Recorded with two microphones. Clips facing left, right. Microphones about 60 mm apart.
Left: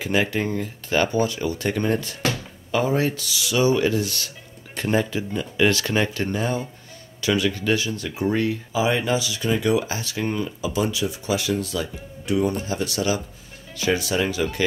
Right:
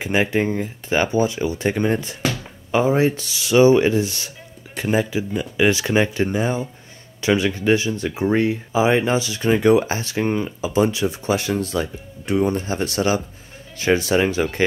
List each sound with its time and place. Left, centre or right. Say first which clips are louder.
0.0 s speech: right 3 dB; right
4.7 s speech: right 2 dB; centre; by 14.6 s right